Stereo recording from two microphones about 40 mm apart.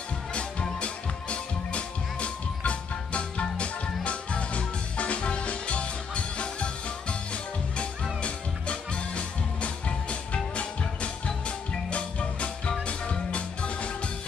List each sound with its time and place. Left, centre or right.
0.3 s music: left